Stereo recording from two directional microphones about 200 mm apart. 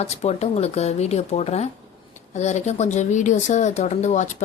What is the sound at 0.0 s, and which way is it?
Speech, 30° left (ahead or behind).